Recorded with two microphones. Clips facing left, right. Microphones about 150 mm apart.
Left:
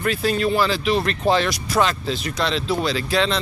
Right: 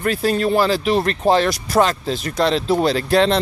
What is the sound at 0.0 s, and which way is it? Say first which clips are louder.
Speech: right 2 dB; 40° right (ahead or behind).